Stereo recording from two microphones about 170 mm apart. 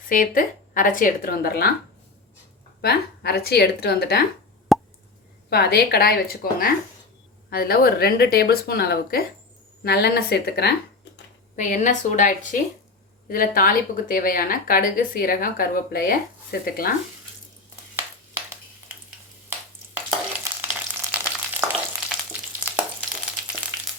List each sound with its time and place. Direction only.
0.1 s a woman's voice: 55° left (ahead or behind)
2.8 s a woman's voice: 65° left (ahead or behind)
4.7 s plop: centre (ahead or behind)
5.5 s a woman's voice: 70° left (ahead or behind)
11.5 s a woman's voice: 45° left (ahead or behind)
20.4 s frying: 10° right (ahead or behind)